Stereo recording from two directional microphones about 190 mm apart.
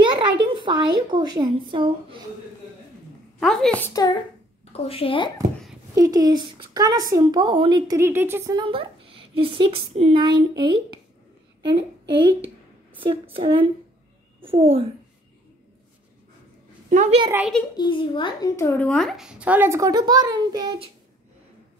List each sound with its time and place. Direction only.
0.0 s a woman's voice: 25° right (ahead or behind)
3.3 s a woman's voice: centre (ahead or behind)
3.8 s speech: 20° left (ahead or behind)
4.7 s speech: 30° left (ahead or behind)
5.9 s a woman's voice: 20° right (ahead or behind)
16.9 s a child's voice: 40° right (ahead or behind)
17.7 s speech: 25° left (ahead or behind); by 20.9 s 25° right (ahead or behind)